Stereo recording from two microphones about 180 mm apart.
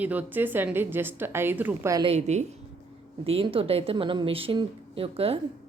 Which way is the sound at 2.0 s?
40° right (ahead or behind).